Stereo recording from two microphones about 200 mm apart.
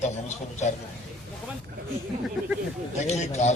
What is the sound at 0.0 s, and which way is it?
Speech, 35° left (ahead or behind).